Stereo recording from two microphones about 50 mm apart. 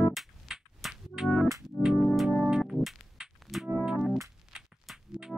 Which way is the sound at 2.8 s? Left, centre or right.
Centre.